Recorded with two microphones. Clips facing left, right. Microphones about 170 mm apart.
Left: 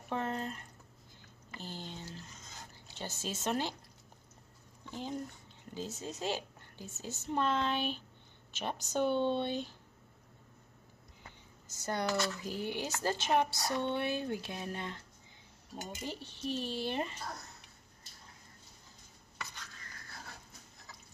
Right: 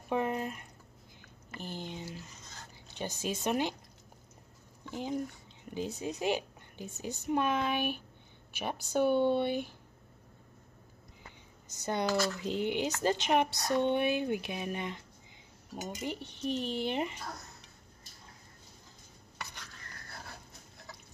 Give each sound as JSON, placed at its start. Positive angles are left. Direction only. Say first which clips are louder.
{"t": 0.1, "sound": "a sound", "louder": "right 4 dB", "side_deg": -15}
{"t": 2.9, "sound": "a woman's voice", "louder": "right 5 dB", "side_deg": -15}
{"t": 5.8, "sound": "a woman's voice", "louder": "right 5 dB", "side_deg": -15}
{"t": 11.7, "sound": "a woman's voice", "louder": "right 3 dB", "side_deg": -20}